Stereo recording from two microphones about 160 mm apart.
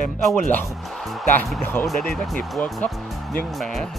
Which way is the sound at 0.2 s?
Centre (ahead or behind).